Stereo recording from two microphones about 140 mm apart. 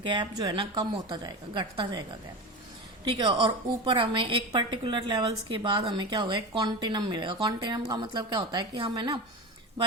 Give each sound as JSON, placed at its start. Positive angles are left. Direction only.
{"t": 0.0, "sound": "a woman's voice", "side_deg": -35}